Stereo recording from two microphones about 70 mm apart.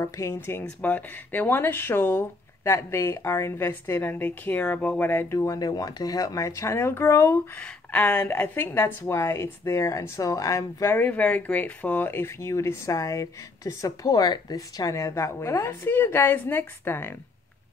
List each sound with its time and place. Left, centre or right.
0.0 s speech: left
0.5 s speech: left
5.3 s speech: left
7.5 s speech: centre
8.3 s speech: left
10.9 s speech: left